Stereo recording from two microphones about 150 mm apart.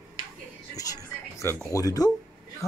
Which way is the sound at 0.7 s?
20° left (ahead or behind).